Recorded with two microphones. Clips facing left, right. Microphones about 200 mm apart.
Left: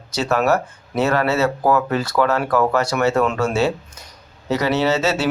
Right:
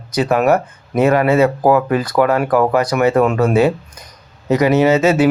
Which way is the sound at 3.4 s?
55° right (ahead or behind).